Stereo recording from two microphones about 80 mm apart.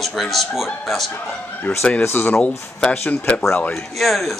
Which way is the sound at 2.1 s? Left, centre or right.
Left.